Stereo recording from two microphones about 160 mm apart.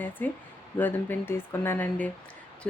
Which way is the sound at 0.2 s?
10° left (ahead or behind).